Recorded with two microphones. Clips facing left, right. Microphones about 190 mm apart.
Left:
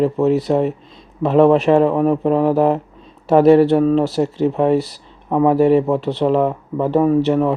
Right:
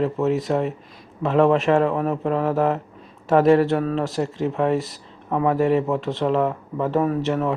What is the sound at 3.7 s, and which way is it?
Speech, 30° left (ahead or behind).